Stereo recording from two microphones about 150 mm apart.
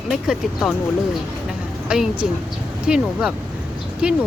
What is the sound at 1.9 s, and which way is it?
A woman's voice, 10° right (ahead or behind).